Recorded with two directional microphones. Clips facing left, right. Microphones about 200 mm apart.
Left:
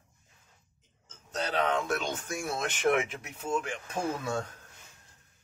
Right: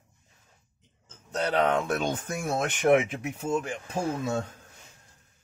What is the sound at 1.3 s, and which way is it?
Speech, 60° right (ahead or behind).